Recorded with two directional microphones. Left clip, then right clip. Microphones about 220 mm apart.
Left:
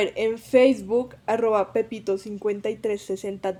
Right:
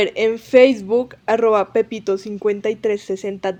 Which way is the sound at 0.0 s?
15° right (ahead or behind).